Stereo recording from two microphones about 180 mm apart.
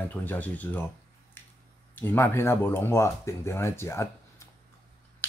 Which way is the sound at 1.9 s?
10° left (ahead or behind).